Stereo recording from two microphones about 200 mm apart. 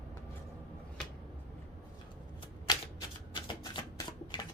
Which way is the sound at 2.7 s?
20° left (ahead or behind).